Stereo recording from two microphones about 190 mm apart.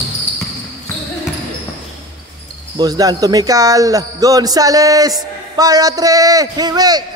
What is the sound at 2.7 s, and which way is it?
Speech, 20° right (ahead or behind).